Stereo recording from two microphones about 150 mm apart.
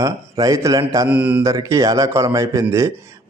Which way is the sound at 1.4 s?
20° right (ahead or behind).